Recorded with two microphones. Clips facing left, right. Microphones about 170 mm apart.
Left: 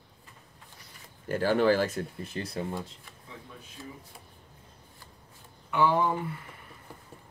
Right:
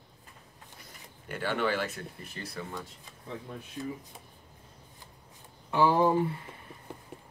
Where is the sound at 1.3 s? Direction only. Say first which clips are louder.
Left 7 dB; 40° left (ahead or behind).